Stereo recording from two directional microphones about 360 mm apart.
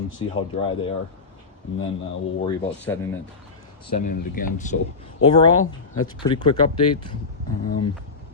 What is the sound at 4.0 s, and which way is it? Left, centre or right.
Speech, left.